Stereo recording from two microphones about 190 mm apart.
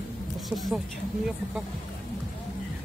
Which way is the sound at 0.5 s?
Centre (ahead or behind).